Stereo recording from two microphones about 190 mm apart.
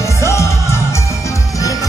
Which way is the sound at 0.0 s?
15° left (ahead or behind).